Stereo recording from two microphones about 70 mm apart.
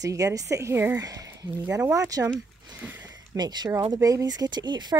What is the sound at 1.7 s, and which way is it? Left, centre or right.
Speech, right.